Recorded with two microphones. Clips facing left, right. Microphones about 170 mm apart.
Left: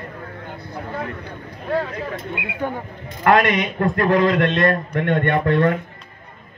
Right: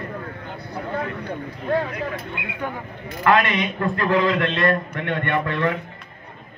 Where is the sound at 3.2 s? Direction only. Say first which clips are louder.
Left 3 dB; 50° left (ahead or behind).